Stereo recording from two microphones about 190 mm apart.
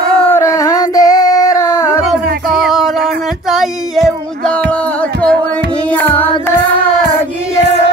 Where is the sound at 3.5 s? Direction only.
Centre (ahead or behind).